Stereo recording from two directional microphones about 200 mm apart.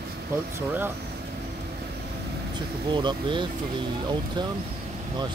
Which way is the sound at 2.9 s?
25° right (ahead or behind).